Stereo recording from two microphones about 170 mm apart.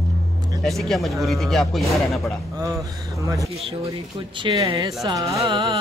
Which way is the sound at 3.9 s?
30° right (ahead or behind).